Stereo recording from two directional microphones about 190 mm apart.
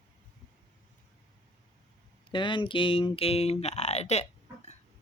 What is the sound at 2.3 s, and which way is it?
Speech, 25° left (ahead or behind).